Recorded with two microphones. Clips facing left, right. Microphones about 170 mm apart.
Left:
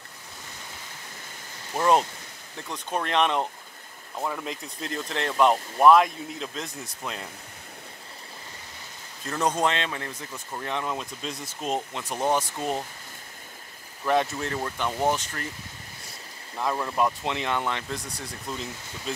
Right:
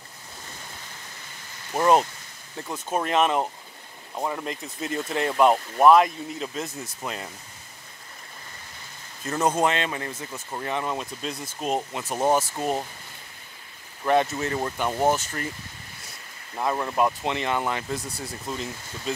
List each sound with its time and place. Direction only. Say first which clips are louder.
1.7 s speech: right 2 dB; 5° right (ahead or behind)
9.2 s speech: right 2 dB; 5° right (ahead or behind)
14.0 s speech: right 2 dB; centre (ahead or behind)
16.5 s speech: right 2 dB; 5° right (ahead or behind)